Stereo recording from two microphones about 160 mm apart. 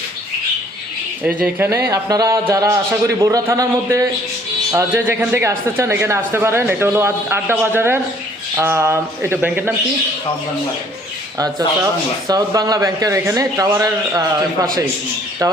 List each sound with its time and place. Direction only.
1.2 s a man's voice: 10° right (ahead or behind)
12.3 s a man's voice: 25° right (ahead or behind)